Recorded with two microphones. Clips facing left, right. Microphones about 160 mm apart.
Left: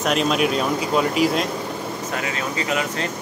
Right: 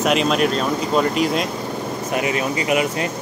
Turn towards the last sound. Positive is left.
turn(degrees=-15)  # may be behind; listen again after turning